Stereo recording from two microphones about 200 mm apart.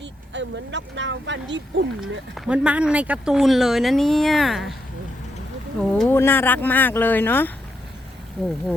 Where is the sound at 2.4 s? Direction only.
5° right (ahead or behind).